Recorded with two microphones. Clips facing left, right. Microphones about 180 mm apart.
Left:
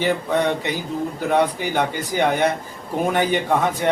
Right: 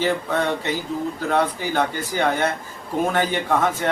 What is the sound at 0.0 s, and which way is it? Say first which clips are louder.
Speech: left 2 dB; 15° left (ahead or behind).